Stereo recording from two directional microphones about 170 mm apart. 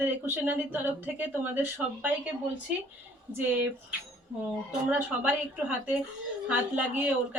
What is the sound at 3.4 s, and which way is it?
Speech, 10° right (ahead or behind).